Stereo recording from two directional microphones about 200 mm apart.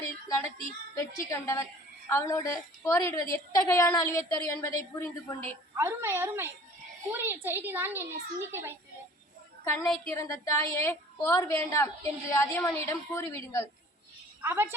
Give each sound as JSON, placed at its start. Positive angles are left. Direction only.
{"t": 0.3, "sound": "a woman's voice", "side_deg": 15}
{"t": 5.7, "sound": "a child's voice", "side_deg": -15}
{"t": 9.6, "sound": "a woman's voice", "side_deg": 5}
{"t": 14.4, "sound": "a child's voice", "side_deg": -10}